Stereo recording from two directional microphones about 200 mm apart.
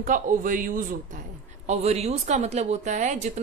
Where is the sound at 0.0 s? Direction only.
40° right (ahead or behind).